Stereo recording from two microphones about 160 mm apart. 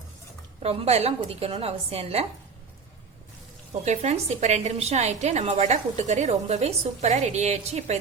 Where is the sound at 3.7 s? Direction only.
45° right (ahead or behind).